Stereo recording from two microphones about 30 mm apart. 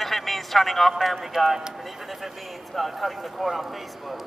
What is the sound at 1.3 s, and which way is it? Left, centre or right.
Speech, centre.